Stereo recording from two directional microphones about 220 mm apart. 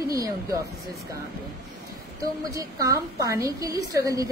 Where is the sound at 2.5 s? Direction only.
15° right (ahead or behind).